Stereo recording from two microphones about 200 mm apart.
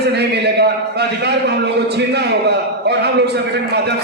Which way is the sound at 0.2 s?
55° right (ahead or behind).